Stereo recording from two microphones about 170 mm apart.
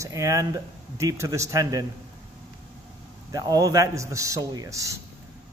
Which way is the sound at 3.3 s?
20° right (ahead or behind).